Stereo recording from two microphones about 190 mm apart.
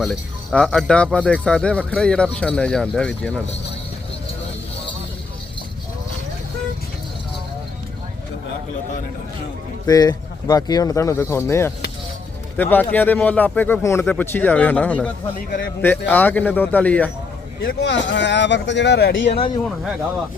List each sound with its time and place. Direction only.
0.0 s speech: 5° left (ahead or behind)
9.8 s speech: 20° left (ahead or behind)
17.6 s speech: 60° left (ahead or behind)